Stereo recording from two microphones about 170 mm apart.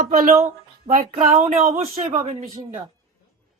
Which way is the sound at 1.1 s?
45° right (ahead or behind).